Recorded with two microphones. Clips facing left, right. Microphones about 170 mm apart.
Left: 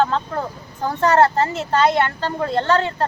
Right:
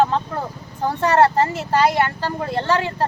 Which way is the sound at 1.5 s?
10° right (ahead or behind).